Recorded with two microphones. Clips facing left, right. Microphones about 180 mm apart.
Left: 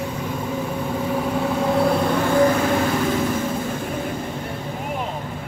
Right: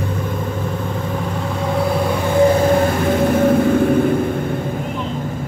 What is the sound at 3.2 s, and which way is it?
Vehicle, 65° right (ahead or behind).